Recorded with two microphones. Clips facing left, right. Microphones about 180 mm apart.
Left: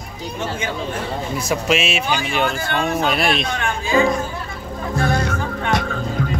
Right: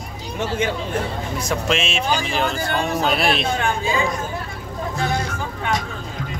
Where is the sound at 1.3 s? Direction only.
5° left (ahead or behind).